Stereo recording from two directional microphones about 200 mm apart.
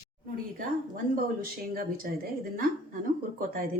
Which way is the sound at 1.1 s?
45° right (ahead or behind).